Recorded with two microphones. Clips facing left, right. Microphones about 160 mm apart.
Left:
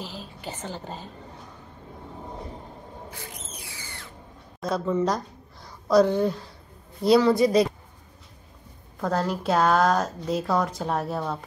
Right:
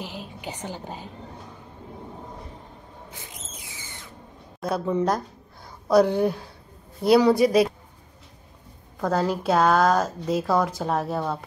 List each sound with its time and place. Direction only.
0.0 s a woman's voice: 15° right (ahead or behind)
3.1 s a sound: 20° right (ahead or behind)
4.6 s a woman's voice: 5° right (ahead or behind)
9.0 s a woman's voice: centre (ahead or behind)